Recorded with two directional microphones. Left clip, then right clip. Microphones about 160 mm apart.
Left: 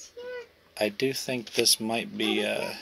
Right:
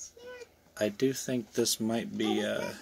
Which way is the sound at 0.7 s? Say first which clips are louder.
Left 3 dB; 50° right (ahead or behind).